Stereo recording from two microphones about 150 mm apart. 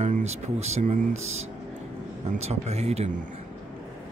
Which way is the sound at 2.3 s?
45° right (ahead or behind).